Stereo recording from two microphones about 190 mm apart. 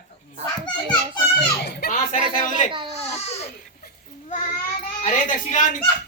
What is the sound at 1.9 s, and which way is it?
Music, 40° left (ahead or behind).